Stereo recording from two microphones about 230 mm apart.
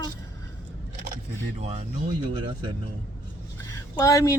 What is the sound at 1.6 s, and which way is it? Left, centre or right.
Speech, right.